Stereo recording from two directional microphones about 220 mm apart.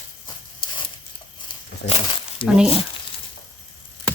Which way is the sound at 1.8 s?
25° left (ahead or behind).